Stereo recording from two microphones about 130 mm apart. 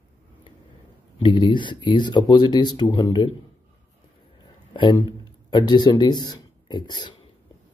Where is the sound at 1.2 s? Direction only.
35° left (ahead or behind).